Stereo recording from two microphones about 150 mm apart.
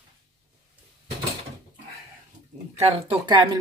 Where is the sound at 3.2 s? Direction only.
30° right (ahead or behind).